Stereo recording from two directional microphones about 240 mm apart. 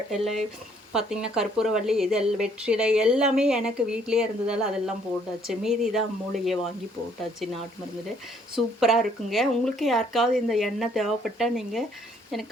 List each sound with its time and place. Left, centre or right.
0.1 s speech: centre
8.5 s speech: centre